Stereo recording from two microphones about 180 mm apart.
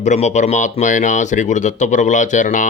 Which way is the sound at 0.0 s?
40° left (ahead or behind).